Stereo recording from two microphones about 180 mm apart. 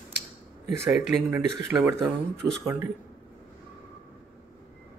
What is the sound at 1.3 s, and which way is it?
Speech, 15° right (ahead or behind).